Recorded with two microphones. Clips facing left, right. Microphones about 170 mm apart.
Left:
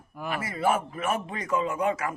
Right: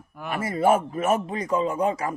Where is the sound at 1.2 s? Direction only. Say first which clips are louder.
Right 4 dB; 30° right (ahead or behind).